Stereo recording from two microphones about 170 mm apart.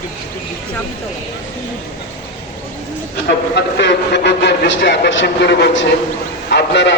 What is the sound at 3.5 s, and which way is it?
A man's voice, 90° left.